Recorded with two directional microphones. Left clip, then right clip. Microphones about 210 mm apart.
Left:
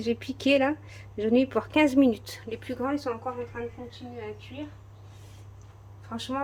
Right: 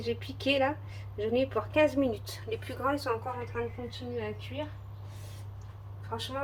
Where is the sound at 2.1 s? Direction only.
30° left (ahead or behind).